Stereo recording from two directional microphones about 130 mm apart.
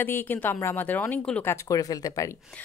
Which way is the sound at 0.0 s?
15° left (ahead or behind).